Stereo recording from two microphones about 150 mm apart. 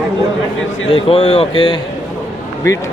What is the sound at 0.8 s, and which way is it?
Speech, 40° left (ahead or behind).